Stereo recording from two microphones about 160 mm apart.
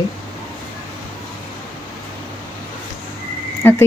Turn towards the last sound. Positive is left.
turn(degrees=15)  # may be behind; listen again after turning